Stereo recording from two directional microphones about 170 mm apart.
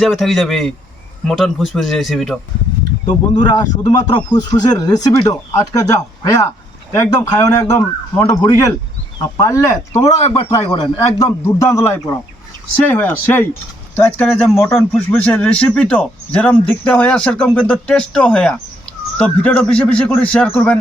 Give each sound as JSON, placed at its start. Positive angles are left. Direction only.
{"t": 0.0, "sound": "speech", "side_deg": 0}
{"t": 3.1, "sound": "speech", "side_deg": 25}
{"t": 9.2, "sound": "speech", "side_deg": 20}
{"t": 10.3, "sound": "speech", "side_deg": 35}
{"t": 11.2, "sound": "speech", "side_deg": 15}